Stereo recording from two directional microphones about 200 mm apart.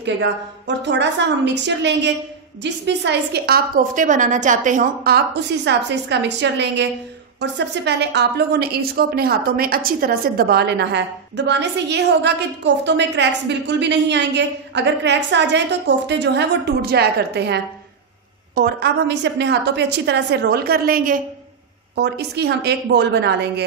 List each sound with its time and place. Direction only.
0.0 s a woman's voice: 60° right (ahead or behind); by 21.2 s 45° right (ahead or behind)
21.9 s a woman's voice: 55° right (ahead or behind)